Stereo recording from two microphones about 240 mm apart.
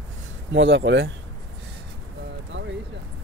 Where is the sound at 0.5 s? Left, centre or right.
Right.